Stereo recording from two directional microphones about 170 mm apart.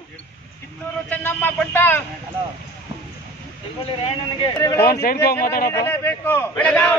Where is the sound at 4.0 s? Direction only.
35° left (ahead or behind).